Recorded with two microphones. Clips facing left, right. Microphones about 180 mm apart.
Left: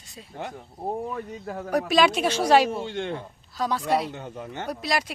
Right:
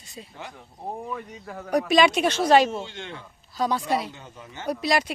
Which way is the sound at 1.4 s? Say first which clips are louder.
Left 4 dB; 35° left (ahead or behind).